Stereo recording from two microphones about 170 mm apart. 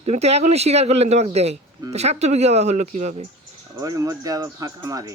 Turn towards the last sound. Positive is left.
turn(degrees=-20)  # may be behind; listen again after turning